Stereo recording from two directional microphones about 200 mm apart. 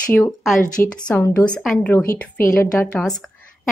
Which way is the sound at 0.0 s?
5° left (ahead or behind).